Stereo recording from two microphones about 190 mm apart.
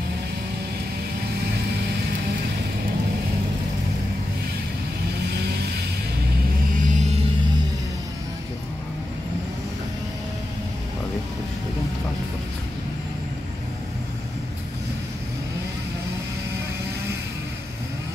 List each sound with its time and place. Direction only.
5.3 s music: 60° right (ahead or behind)
6.8 s vehicle: 40° right (ahead or behind)